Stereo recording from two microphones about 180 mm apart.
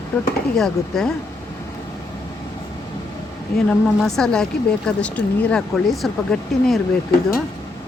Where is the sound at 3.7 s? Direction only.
5° left (ahead or behind).